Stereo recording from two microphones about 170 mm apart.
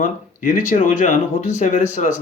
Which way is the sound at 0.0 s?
50° left (ahead or behind).